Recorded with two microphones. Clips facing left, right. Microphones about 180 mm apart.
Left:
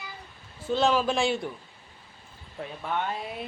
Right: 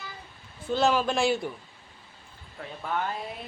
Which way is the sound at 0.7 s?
Centre (ahead or behind).